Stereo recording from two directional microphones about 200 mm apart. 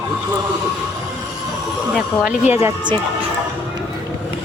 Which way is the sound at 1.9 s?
5° right (ahead or behind).